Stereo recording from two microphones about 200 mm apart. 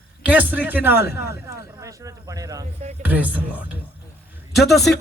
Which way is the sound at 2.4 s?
15° right (ahead or behind).